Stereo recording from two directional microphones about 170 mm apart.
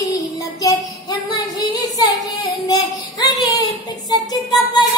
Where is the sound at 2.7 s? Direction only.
20° left (ahead or behind).